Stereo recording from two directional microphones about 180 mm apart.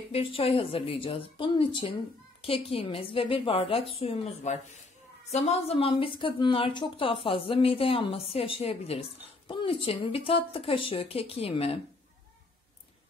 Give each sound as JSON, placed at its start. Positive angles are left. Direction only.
{"t": 0.1, "sound": "speech", "side_deg": 30}